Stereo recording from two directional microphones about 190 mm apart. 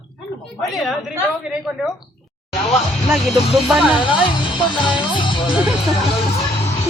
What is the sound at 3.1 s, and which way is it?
Speech, centre (ahead or behind).